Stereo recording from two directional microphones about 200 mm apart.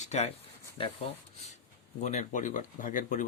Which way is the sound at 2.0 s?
35° left (ahead or behind).